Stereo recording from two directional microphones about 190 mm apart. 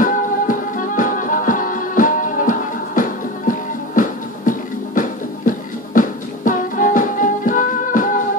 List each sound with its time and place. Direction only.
0.0 s music: 45° left (ahead or behind)